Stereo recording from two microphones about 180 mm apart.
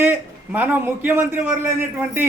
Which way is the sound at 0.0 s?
10° right (ahead or behind).